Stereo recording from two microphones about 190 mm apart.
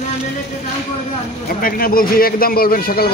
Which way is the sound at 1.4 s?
50° left (ahead or behind).